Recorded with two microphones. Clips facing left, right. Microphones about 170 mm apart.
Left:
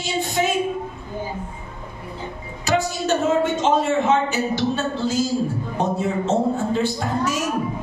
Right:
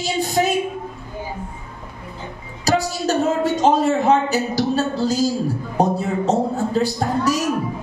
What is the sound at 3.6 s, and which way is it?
A man's voice, 35° right (ahead or behind).